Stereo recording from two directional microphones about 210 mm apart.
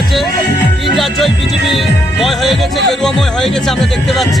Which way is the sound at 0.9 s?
Centre (ahead or behind).